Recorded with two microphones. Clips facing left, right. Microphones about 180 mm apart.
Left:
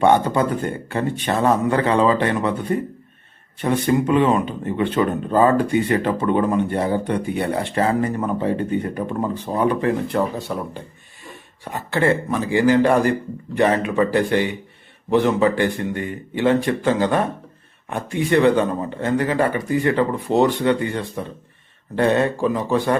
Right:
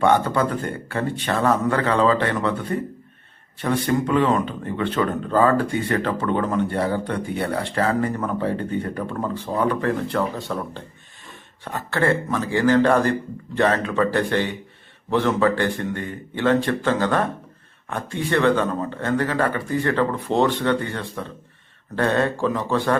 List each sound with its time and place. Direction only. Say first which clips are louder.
0.0 s speech: left 2 dB; 20° left (ahead or behind)